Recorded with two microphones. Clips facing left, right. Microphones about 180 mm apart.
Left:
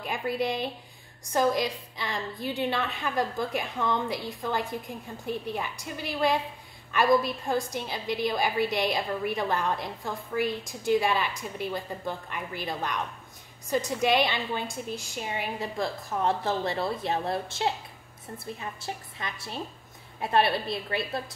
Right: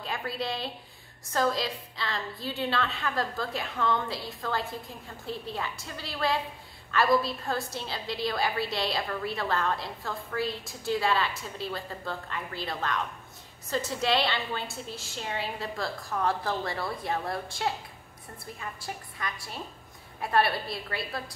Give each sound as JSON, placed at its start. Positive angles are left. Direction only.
{"t": 0.0, "sound": "a woman's voice", "side_deg": 15}